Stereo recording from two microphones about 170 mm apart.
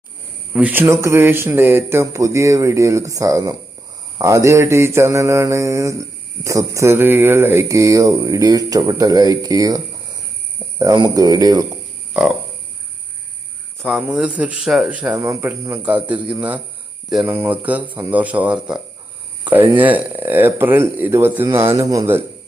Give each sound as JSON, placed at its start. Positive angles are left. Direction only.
{"t": 0.5, "sound": "mantra", "side_deg": -10}
{"t": 10.8, "sound": "speech", "side_deg": -20}
{"t": 13.8, "sound": "mantra", "side_deg": -5}
{"t": 15.1, "sound": "speech", "side_deg": -20}
{"t": 15.8, "sound": "mantra", "side_deg": -10}